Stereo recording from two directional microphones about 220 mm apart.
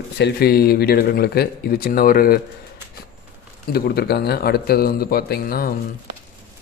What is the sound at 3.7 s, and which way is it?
Speech, 45° left (ahead or behind).